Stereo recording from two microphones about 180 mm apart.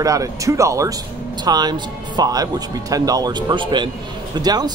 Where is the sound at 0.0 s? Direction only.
20° right (ahead or behind).